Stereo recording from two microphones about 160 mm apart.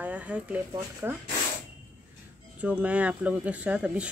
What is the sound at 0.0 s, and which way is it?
Speech, 10° right (ahead or behind).